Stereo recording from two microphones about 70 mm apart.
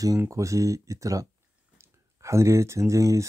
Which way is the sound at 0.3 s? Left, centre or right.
Right.